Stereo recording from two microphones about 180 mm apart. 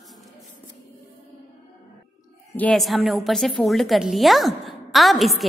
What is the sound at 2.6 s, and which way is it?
A woman's voice, 5° left (ahead or behind).